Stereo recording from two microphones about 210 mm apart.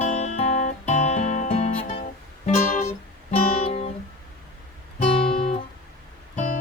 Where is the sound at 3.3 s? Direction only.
30° left (ahead or behind).